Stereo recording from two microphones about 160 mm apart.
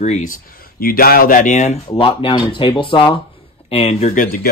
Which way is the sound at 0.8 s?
65° left (ahead or behind).